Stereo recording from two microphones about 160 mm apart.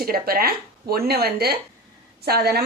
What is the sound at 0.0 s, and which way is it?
A woman's voice, 70° right (ahead or behind).